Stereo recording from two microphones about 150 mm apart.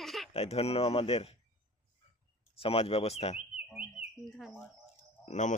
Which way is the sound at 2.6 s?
40° left (ahead or behind).